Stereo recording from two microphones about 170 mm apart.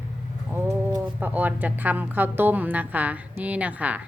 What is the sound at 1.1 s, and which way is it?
A woman's voice, 10° right (ahead or behind).